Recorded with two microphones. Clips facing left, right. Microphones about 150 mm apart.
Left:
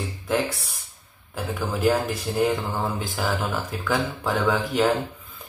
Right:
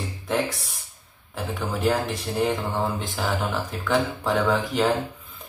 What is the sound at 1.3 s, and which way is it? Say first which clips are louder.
Speech: left 1 dB; centre (ahead or behind).